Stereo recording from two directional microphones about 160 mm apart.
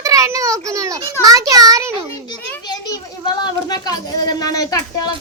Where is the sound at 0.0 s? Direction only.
20° right (ahead or behind).